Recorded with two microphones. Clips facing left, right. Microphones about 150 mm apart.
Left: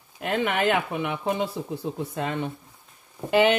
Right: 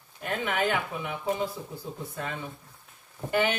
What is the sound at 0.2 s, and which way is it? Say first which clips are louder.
Speech: left 4 dB; 75° left (ahead or behind).